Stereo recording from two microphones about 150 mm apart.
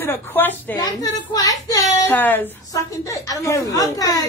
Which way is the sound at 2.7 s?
25° left (ahead or behind).